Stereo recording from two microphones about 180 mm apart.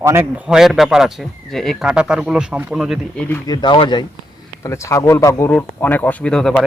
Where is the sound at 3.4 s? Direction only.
25° left (ahead or behind).